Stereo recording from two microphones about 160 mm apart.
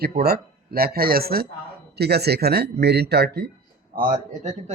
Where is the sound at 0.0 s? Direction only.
75° right (ahead or behind).